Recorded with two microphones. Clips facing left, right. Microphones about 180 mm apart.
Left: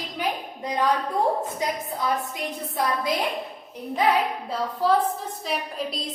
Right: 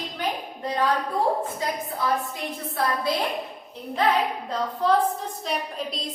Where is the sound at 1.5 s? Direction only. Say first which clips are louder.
Left 1 dB; 20° left (ahead or behind).